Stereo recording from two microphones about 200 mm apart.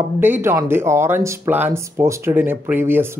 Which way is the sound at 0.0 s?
10° right (ahead or behind).